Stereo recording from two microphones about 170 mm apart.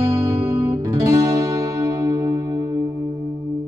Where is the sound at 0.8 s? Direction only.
20° right (ahead or behind).